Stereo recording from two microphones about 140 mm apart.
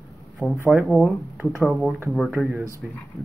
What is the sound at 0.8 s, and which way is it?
Speech, centre (ahead or behind).